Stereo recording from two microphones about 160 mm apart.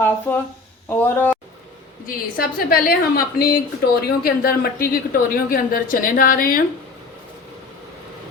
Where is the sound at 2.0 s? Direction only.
65° left (ahead or behind).